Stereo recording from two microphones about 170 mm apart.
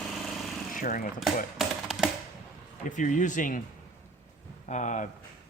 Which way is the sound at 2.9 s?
50° left (ahead or behind).